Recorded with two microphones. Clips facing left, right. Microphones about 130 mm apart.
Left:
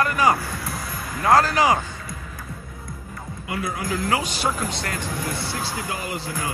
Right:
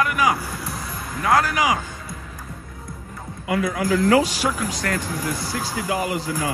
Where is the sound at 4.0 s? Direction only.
35° right (ahead or behind).